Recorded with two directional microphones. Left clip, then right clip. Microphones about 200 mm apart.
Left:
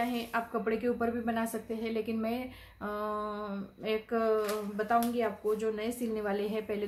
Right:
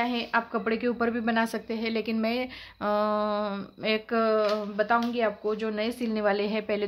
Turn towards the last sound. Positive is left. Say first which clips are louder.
# right 6 dB
turn(degrees=-50)  # may be behind; listen again after turning